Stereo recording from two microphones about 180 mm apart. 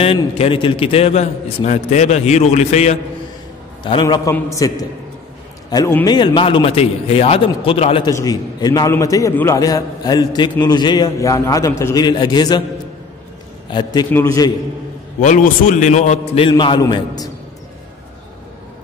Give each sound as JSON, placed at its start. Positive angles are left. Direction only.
{"t": 0.0, "sound": "a man's voice", "side_deg": 30}
{"t": 3.8, "sound": "a man's voice", "side_deg": 25}
{"t": 8.1, "sound": "a man's voice", "side_deg": 20}
{"t": 13.7, "sound": "a man's voice", "side_deg": 25}
{"t": 15.1, "sound": "a man's voice", "side_deg": 45}